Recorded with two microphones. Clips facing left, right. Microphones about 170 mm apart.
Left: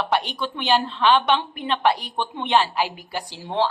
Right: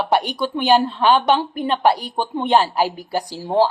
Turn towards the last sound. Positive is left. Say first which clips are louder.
# right 7 dB
turn(degrees=-40)  # may be behind; listen again after turning